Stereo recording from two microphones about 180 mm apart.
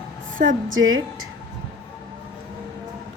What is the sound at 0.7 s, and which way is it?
Speech, 90° right.